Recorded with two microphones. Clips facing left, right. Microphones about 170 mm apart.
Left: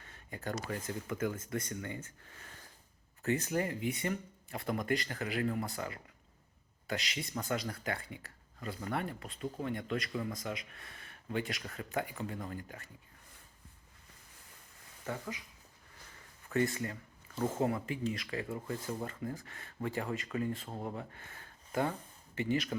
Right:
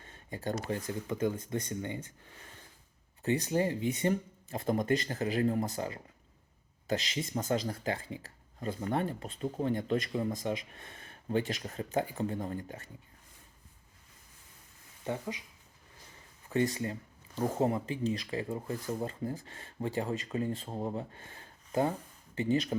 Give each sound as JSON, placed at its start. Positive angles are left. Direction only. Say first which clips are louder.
{"t": 0.0, "sound": "speech", "louder": "right 4 dB", "side_deg": -20}
{"t": 3.2, "sound": "speech", "louder": "right 3 dB", "side_deg": -20}
{"t": 15.0, "sound": "speech", "louder": "right 4 dB", "side_deg": -20}
{"t": 16.7, "sound": "speech", "louder": "right 3 dB", "side_deg": -20}
{"t": 17.6, "sound": "speech", "louder": "right 4 dB", "side_deg": -30}